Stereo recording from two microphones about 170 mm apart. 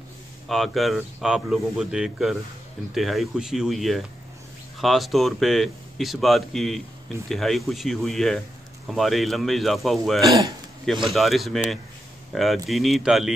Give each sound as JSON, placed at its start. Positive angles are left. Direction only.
{"t": 0.5, "sound": "speech", "side_deg": 0}
{"t": 10.2, "sound": "speech", "side_deg": -20}
{"t": 11.1, "sound": "speech", "side_deg": 0}